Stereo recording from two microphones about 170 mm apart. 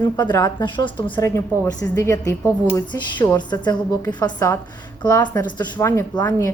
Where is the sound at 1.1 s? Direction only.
15° left (ahead or behind).